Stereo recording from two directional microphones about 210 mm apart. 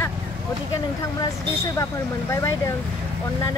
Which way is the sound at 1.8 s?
15° left (ahead or behind).